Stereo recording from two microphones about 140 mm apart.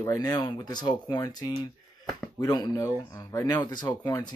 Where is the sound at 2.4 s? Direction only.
30° left (ahead or behind).